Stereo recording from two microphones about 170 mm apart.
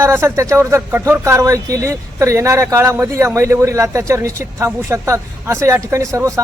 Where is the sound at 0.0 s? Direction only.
15° right (ahead or behind).